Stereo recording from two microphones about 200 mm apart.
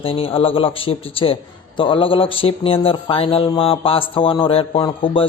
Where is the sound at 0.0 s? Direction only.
30° left (ahead or behind).